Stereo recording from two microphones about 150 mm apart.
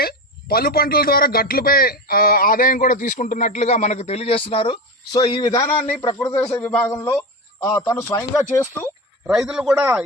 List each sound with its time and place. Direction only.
0.0 s a man's voice: 90° left; by 8.9 s 10° left (ahead or behind)
9.2 s speech: 5° right (ahead or behind)